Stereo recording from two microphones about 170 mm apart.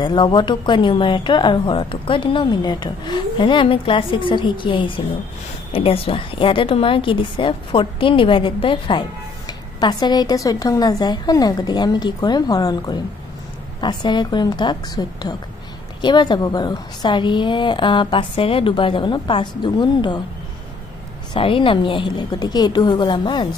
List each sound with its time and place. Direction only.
0.0 s a woman's voice: 25° left (ahead or behind)
21.3 s a woman's voice: 30° left (ahead or behind)